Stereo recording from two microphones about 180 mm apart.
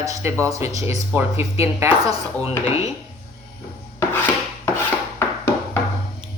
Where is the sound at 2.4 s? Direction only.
35° left (ahead or behind).